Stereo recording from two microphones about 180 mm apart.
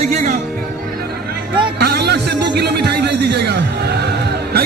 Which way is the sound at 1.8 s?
60° right (ahead or behind).